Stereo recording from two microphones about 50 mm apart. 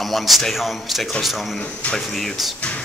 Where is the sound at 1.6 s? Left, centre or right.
Left.